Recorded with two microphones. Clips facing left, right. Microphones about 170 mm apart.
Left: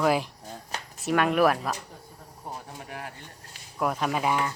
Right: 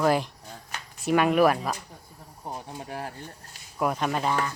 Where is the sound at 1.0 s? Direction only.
Centre (ahead or behind).